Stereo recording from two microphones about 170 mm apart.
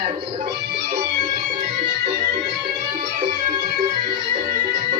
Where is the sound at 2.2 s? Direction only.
65° right (ahead or behind).